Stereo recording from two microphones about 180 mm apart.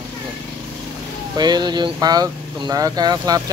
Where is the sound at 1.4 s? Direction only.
25° right (ahead or behind).